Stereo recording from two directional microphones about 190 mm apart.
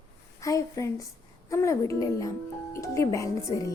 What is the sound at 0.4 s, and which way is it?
Speech, 15° left (ahead or behind).